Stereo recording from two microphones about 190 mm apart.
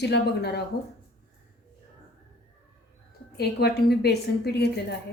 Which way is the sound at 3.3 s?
60° left (ahead or behind).